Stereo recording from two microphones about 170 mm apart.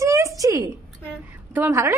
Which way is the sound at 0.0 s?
20° right (ahead or behind).